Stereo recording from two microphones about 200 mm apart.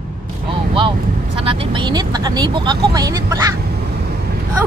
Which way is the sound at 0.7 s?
25° right (ahead or behind).